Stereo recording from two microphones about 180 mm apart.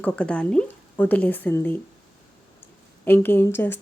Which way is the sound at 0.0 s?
5° left (ahead or behind).